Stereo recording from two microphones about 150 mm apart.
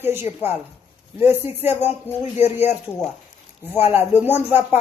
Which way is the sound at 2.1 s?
45° left (ahead or behind).